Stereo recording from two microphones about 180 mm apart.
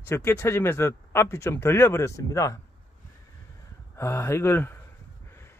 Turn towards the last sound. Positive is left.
turn(degrees=10)  # may be behind; listen again after turning